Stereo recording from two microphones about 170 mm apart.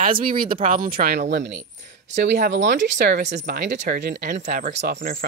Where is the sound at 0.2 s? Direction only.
55° right (ahead or behind).